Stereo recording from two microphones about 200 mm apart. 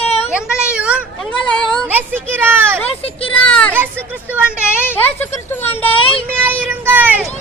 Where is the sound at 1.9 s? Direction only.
10° right (ahead or behind).